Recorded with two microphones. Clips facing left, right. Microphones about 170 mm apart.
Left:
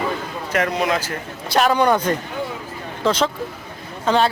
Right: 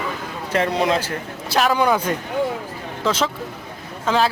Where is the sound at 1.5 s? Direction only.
Centre (ahead or behind).